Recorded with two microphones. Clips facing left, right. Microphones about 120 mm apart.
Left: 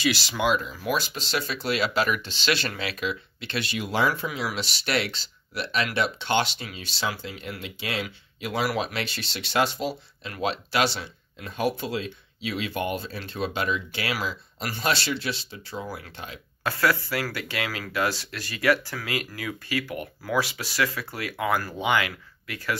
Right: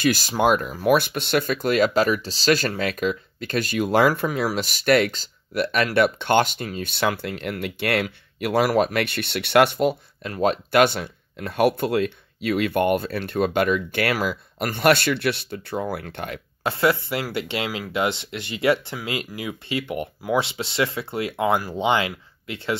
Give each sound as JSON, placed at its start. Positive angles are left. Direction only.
{"t": 0.0, "sound": "speech", "side_deg": -45}
{"t": 8.6, "sound": "speech", "side_deg": -50}
{"t": 16.6, "sound": "speech", "side_deg": -25}